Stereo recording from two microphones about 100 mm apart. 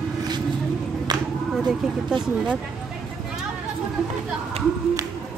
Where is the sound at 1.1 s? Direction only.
45° right (ahead or behind).